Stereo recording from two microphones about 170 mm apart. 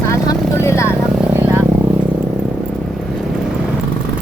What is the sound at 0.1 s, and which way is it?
Vehicle, 15° left (ahead or behind).